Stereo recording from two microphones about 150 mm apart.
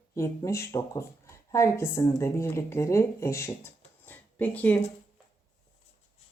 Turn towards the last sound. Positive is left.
turn(degrees=10)  # may be behind; listen again after turning